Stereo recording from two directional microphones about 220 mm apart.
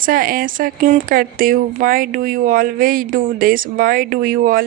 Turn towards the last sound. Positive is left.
turn(degrees=-40)  # may be behind; listen again after turning